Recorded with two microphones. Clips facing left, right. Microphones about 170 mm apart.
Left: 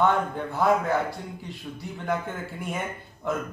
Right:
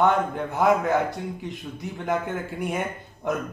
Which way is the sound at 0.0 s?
20° right (ahead or behind).